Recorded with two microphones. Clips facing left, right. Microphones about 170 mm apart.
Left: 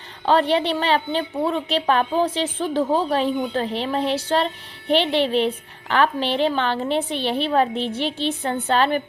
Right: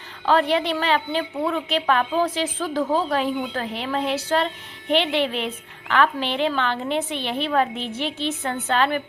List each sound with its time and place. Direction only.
0.3 s a woman's voice: 30° left (ahead or behind)